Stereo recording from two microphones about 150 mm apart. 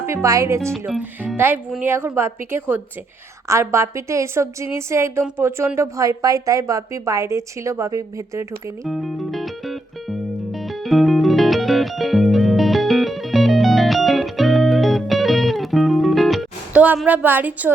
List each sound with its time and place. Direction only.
0.0 s a woman's voice: 20° right (ahead or behind)
0.7 s speech: centre (ahead or behind)
1.8 s a woman's voice: 15° right (ahead or behind)
8.8 s music: centre (ahead or behind)
17.1 s a woman's voice: 10° right (ahead or behind)